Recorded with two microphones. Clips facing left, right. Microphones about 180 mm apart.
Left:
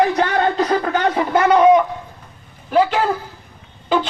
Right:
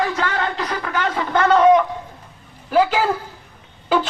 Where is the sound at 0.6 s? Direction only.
45° left (ahead or behind).